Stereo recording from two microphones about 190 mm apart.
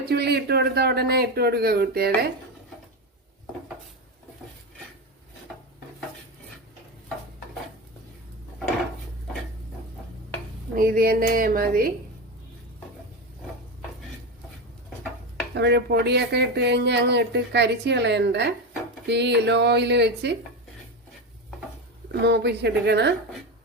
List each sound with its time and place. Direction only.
0.0 s speech: 60° right (ahead or behind)
10.8 s speech: 50° right (ahead or behind)
15.5 s speech: 65° right (ahead or behind)
22.1 s speech: 60° right (ahead or behind)